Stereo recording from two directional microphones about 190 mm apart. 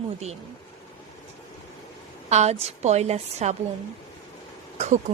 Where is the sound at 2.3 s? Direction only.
35° right (ahead or behind).